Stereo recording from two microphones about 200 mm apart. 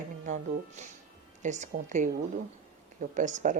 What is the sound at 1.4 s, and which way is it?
Speech, 35° right (ahead or behind).